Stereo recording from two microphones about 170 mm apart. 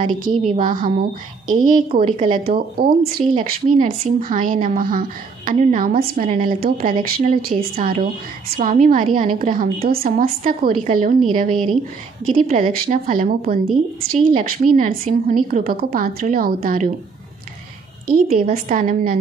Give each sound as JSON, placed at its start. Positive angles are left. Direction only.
{"t": 0.4, "sound": "a woman's voice", "side_deg": -45}
{"t": 3.3, "sound": "a woman's voice", "side_deg": -45}
{"t": 18.0, "sound": "a woman's voice", "side_deg": -60}